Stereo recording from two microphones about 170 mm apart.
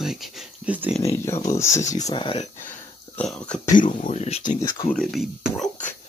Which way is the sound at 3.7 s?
50° left (ahead or behind).